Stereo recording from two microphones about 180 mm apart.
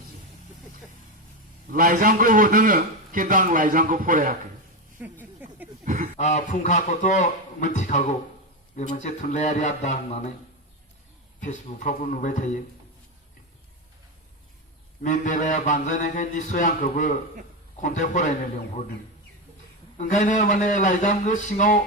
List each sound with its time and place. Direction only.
1.7 s a man's voice: 50° right (ahead or behind)
5.0 s speech: 10° right (ahead or behind)
5.4 s a sound: 10° right (ahead or behind)
5.8 s a sound: 45° right (ahead or behind)
6.1 s a man's voice: 40° left (ahead or behind)
11.3 s a man's voice: 45° left (ahead or behind)
15.0 s a man's voice: 45° left (ahead or behind)
20.0 s a man's voice: 45° left (ahead or behind)